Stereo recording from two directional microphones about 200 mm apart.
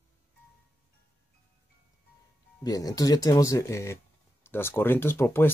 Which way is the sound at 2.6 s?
20° left (ahead or behind).